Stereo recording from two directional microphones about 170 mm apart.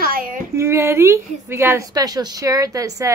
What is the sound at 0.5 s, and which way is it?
A woman's voice, 15° right (ahead or behind).